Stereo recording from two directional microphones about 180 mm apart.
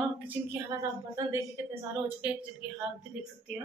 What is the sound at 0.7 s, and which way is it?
Speech, 20° right (ahead or behind).